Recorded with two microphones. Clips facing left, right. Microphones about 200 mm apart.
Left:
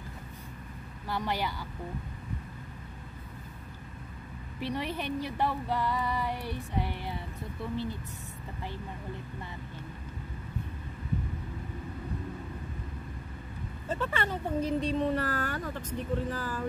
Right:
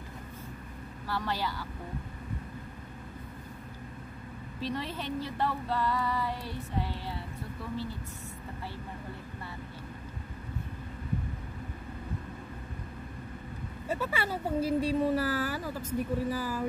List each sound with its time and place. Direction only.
1.0 s speech: 15° left (ahead or behind)
4.6 s speech: 15° left (ahead or behind)
13.8 s speech: 10° right (ahead or behind)